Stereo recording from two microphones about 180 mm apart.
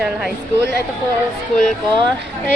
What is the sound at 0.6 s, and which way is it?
Speech, 65° right (ahead or behind).